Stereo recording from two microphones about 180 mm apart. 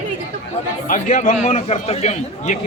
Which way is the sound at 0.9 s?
45° left (ahead or behind).